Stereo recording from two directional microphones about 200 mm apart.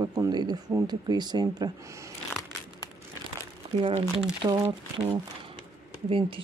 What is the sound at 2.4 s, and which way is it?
Crumpling, 15° left (ahead or behind).